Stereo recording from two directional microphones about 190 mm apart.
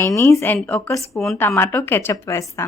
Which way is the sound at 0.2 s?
15° left (ahead or behind).